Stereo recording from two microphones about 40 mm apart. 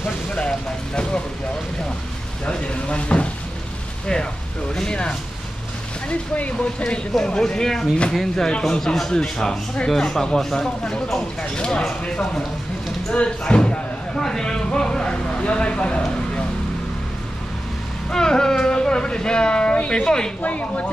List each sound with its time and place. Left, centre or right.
2.4 s speech: left
4.7 s speech: left
6.0 s speech: left
7.2 s speech: centre
8.5 s speech: centre
11.4 s speech: left
13.1 s speech: left
18.1 s speech: centre
20.4 s speech: left